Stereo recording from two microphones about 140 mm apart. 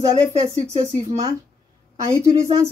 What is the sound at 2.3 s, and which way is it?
Speech, 25° right (ahead or behind).